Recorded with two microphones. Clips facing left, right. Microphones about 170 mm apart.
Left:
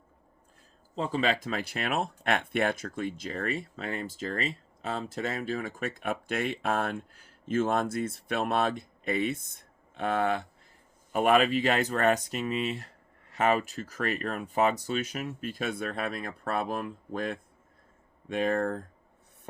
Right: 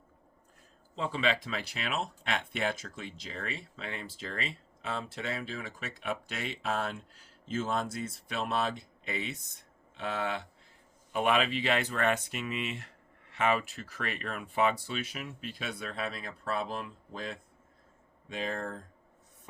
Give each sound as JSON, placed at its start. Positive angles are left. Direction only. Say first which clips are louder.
{"t": 0.9, "sound": "speech", "louder": "left 3 dB", "side_deg": 40}